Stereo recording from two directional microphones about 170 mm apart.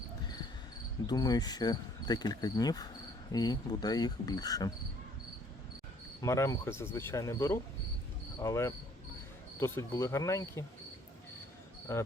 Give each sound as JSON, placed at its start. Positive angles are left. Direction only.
{"t": 1.0, "sound": "cricket", "side_deg": 25}
{"t": 6.2, "sound": "speech", "side_deg": 15}
{"t": 8.4, "sound": "cricket", "side_deg": 20}
{"t": 9.6, "sound": "speech", "side_deg": 15}
{"t": 11.9, "sound": "speech", "side_deg": 15}